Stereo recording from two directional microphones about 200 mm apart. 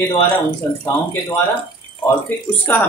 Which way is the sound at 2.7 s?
10° left (ahead or behind).